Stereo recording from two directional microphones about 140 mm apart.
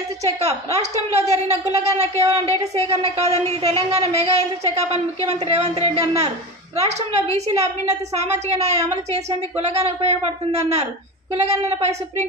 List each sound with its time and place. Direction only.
0.2 s a woman's voice: 50° right (ahead or behind)